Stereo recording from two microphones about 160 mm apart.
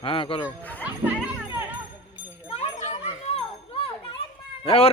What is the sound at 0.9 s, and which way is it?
Children playing, 10° right (ahead or behind).